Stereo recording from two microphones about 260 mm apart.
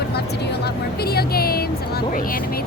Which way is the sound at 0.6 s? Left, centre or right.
Left.